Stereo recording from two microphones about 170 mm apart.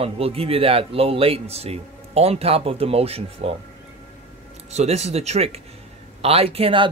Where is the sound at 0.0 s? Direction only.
35° right (ahead or behind).